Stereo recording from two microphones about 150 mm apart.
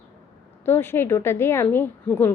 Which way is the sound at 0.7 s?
15° left (ahead or behind).